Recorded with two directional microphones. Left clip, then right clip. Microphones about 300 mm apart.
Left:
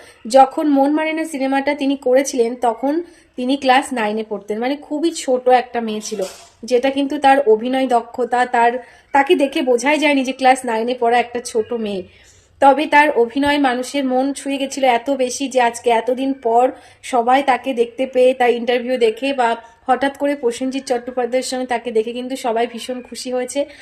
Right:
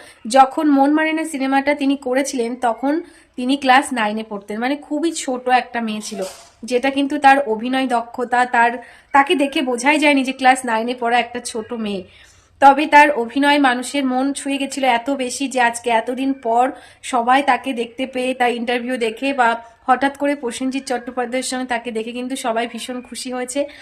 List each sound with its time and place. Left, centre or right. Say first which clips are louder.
0.3 s a woman's voice: left 1 dB; centre